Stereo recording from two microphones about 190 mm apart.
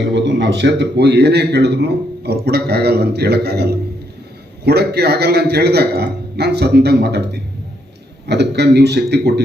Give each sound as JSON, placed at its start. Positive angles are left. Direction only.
{"t": 0.0, "sound": "a man's voice", "side_deg": -70}
{"t": 8.3, "sound": "a man's voice", "side_deg": -60}